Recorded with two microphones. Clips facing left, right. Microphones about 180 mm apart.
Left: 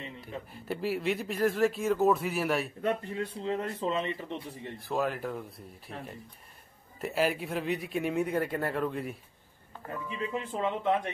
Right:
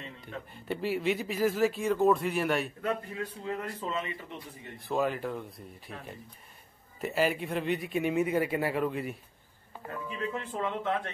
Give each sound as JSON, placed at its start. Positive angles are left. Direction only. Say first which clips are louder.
{"t": 0.3, "sound": "speech", "louder": "right 1 dB", "side_deg": 0}
{"t": 2.8, "sound": "a man's voice", "louder": "left 2 dB", "side_deg": 25}
{"t": 4.7, "sound": "speech", "louder": "right 2 dB", "side_deg": 0}
{"t": 7.0, "sound": "speech", "louder": "even", "side_deg": 0}
{"t": 10.3, "sound": "speech", "louder": "left 5 dB", "side_deg": 15}